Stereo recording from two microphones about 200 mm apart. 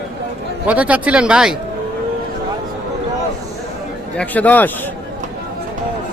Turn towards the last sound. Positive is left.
turn(degrees=10)  # may be behind; listen again after turning